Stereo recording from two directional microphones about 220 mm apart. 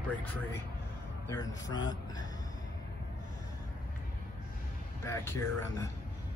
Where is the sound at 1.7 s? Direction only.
20° left (ahead or behind).